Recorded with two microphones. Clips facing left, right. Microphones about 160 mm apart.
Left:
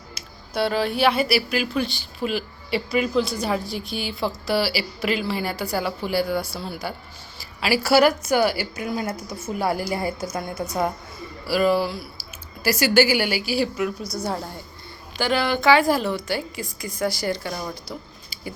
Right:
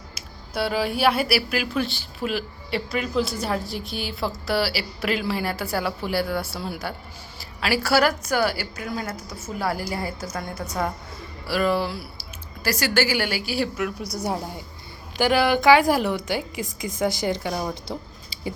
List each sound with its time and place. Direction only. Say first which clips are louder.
0.1 s speech: left 2 dB; 5° right (ahead or behind)
7.3 s a woman's voice: left 2 dB; 5° left (ahead or behind)
14.2 s a woman's voice: right 2 dB; 15° right (ahead or behind)